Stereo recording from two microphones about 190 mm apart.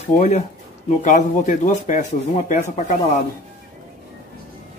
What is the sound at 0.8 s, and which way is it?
Speech, 40° left (ahead or behind).